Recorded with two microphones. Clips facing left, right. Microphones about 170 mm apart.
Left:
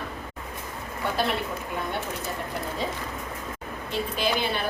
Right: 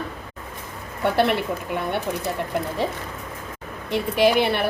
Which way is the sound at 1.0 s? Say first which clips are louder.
Right 7 dB; 65° right (ahead or behind).